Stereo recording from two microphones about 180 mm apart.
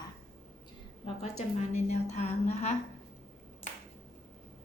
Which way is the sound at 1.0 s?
35° left (ahead or behind).